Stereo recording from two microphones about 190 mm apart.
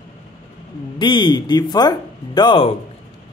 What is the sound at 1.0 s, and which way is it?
Speech, 25° left (ahead or behind).